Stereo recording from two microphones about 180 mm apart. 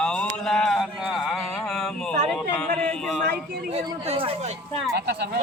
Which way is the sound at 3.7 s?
35° right (ahead or behind).